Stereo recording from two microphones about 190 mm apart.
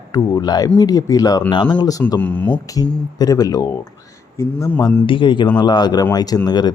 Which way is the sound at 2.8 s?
20° left (ahead or behind).